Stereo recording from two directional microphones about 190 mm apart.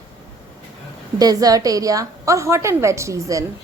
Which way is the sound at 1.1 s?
20° right (ahead or behind).